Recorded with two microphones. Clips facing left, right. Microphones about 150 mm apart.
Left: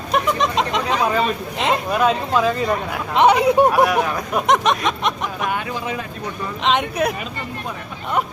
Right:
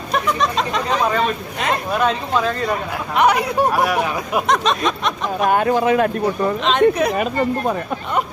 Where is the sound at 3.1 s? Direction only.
25° left (ahead or behind).